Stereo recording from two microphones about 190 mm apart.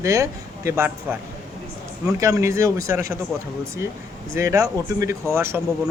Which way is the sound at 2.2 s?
15° right (ahead or behind).